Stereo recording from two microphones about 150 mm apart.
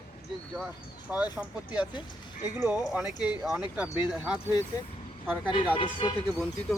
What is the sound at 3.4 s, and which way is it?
Speech, 5° right (ahead or behind).